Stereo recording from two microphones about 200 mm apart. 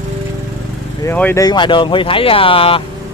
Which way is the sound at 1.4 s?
25° left (ahead or behind).